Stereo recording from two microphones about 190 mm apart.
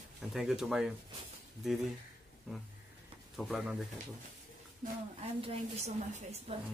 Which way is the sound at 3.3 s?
Centre (ahead or behind).